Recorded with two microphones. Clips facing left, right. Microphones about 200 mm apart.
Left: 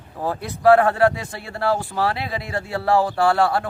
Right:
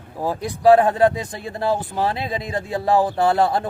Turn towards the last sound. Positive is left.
turn(degrees=-20)  # may be behind; listen again after turning